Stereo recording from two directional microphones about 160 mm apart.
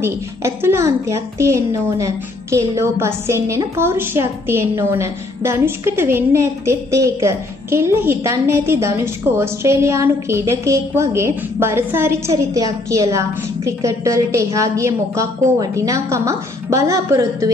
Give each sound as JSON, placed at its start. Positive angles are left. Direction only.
{"t": 0.0, "sound": "a woman's voice", "side_deg": -15}